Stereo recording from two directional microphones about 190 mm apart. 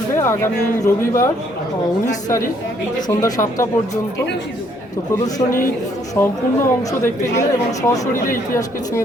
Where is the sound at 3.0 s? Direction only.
20° left (ahead or behind).